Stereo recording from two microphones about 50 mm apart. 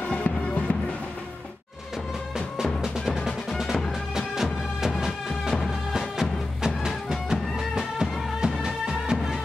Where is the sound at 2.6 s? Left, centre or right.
Centre.